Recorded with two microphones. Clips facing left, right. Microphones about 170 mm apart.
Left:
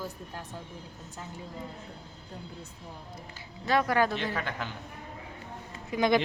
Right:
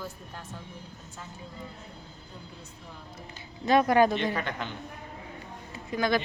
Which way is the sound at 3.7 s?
20° right (ahead or behind).